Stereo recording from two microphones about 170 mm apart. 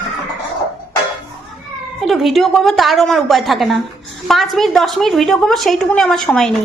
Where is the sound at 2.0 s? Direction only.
Centre (ahead or behind).